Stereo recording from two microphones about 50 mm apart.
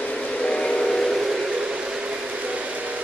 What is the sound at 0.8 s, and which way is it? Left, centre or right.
Steam whistle, centre.